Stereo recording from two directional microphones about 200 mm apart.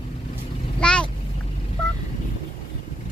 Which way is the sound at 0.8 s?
5° left (ahead or behind).